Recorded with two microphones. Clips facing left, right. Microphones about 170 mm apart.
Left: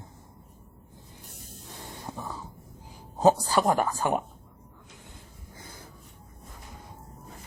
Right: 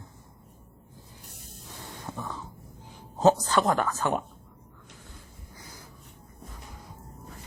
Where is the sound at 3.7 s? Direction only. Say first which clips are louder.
Left 1 dB; 15° left (ahead or behind).